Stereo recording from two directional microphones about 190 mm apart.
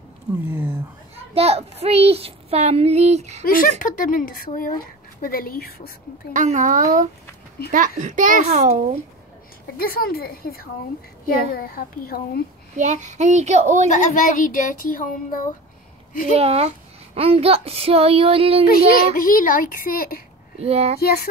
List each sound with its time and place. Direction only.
0.5 s speech: 10° right (ahead or behind)
1.3 s a child's voice: 30° right (ahead or behind)
3.4 s speech: 50° left (ahead or behind)
6.3 s a child's voice: 40° right (ahead or behind)
9.8 s speech: 50° left (ahead or behind)
12.7 s a child's voice: 40° right (ahead or behind)
13.8 s speech: 40° left (ahead or behind)
16.3 s a child's voice: 35° right (ahead or behind)
18.7 s speech: 50° left (ahead or behind)
20.6 s a child's voice: 35° right (ahead or behind)
21.0 s a sound: 55° left (ahead or behind)